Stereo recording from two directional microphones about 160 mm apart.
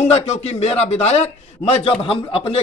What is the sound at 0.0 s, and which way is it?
A man's voice, 40° left (ahead or behind).